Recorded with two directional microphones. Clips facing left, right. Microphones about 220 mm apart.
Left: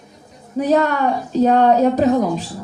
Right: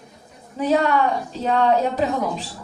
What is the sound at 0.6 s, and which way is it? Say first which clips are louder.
A woman's voice: left 2 dB; 40° left (ahead or behind).